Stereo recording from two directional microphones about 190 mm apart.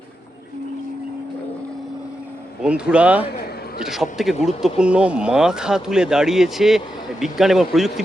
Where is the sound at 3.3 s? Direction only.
55° left (ahead or behind).